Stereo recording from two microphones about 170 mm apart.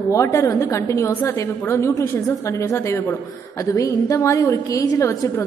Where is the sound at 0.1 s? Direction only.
15° left (ahead or behind).